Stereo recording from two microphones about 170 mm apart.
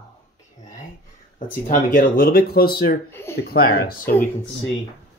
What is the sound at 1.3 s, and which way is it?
Speech, 50° left (ahead or behind).